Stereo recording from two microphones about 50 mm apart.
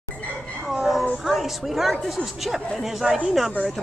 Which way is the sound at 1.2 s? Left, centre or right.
Centre.